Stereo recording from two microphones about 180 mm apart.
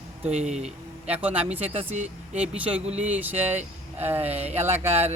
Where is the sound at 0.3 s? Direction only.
40° right (ahead or behind).